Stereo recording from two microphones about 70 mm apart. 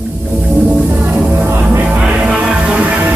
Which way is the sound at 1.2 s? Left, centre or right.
Right.